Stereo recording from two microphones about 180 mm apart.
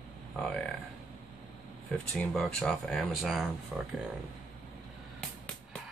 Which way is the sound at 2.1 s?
5° left (ahead or behind).